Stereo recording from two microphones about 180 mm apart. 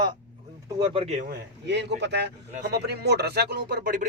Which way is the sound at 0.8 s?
35° right (ahead or behind).